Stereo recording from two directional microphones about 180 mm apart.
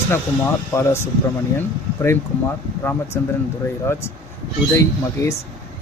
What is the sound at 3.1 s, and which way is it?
Speech, 10° left (ahead or behind).